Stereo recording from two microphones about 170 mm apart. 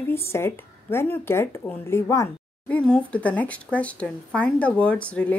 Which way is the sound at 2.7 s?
5° left (ahead or behind).